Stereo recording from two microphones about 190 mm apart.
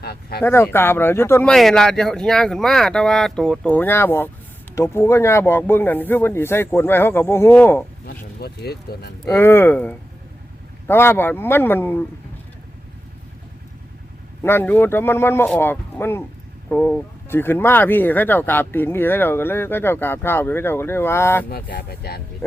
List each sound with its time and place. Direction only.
0.0 s speech: 55° left (ahead or behind)
0.4 s speech: 10° left (ahead or behind)
8.0 s speech: 55° left (ahead or behind)
9.2 s speech: 15° left (ahead or behind)
14.4 s speech: 10° left (ahead or behind)
21.5 s speech: 55° left (ahead or behind)